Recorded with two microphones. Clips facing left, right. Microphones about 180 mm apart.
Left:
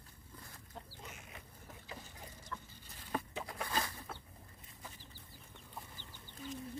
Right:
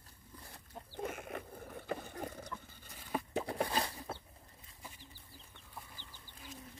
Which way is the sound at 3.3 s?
35° right (ahead or behind).